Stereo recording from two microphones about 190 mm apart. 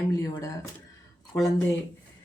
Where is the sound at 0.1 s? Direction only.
15° left (ahead or behind).